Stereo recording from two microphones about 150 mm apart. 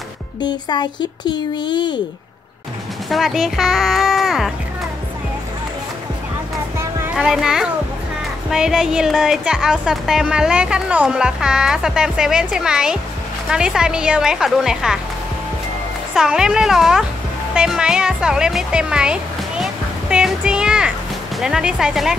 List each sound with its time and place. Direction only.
0.4 s a child's voice: 30° left (ahead or behind)
3.1 s speech: centre (ahead or behind)
6.8 s a sound: 5° right (ahead or behind)
8.5 s speech: 5° right (ahead or behind)
16.2 s speech: 5° right (ahead or behind)